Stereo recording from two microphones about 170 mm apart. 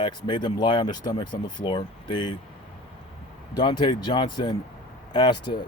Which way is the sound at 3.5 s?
25° left (ahead or behind).